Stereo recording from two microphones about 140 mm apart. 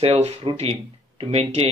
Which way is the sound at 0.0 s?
50° right (ahead or behind).